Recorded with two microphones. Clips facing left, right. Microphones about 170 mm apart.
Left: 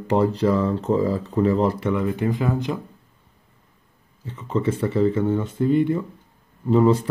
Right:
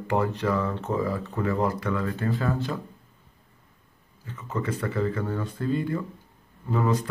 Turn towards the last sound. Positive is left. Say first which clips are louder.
# left 8 dB
turn(degrees=25)  # may be behind; listen again after turning